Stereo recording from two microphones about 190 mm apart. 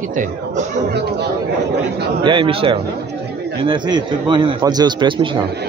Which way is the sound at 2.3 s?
25° right (ahead or behind).